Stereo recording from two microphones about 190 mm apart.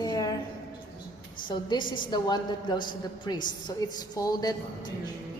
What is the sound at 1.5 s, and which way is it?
A woman's voice, 25° left (ahead or behind).